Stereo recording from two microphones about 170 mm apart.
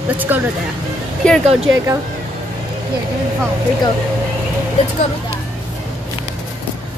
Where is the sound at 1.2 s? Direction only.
5° left (ahead or behind).